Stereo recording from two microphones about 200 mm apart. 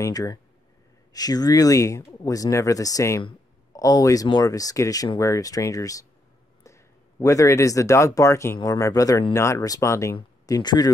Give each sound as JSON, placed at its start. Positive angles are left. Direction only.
{"t": 0.0, "sound": "speech", "side_deg": 15}